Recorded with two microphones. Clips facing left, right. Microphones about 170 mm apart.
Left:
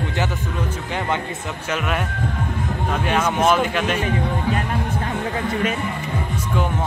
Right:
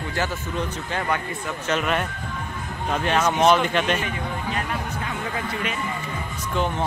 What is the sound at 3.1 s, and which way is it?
Speech, 10° left (ahead or behind).